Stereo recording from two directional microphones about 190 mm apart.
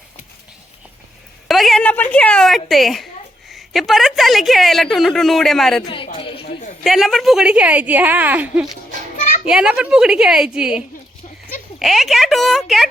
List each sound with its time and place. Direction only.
1.5 s a woman's voice: centre (ahead or behind)
5.8 s a woman's voice: 25° left (ahead or behind)
6.1 s a sound: 30° left (ahead or behind)
6.8 s a woman's voice: centre (ahead or behind)